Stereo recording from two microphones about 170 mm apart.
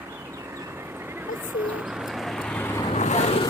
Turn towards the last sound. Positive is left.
turn(degrees=40)  # may be behind; listen again after turning